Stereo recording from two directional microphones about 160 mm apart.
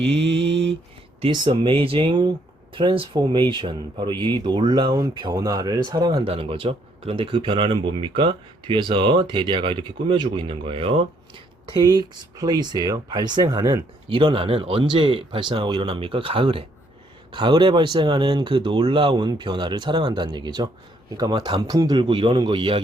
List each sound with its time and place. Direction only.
0.1 s mantra: 90° right
1.2 s speech: 30° right (ahead or behind)